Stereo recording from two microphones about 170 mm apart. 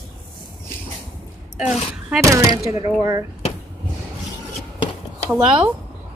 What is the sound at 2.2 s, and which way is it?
Speech, 20° right (ahead or behind).